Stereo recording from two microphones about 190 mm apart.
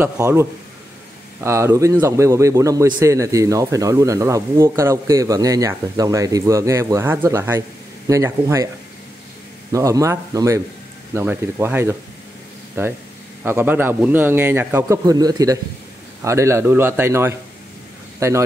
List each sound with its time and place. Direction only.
0.0 s a man's voice: 15° right (ahead or behind)
9.7 s a man's voice: 15° right (ahead or behind)